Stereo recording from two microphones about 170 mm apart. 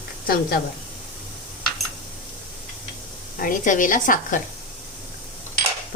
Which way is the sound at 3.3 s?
50° left (ahead or behind).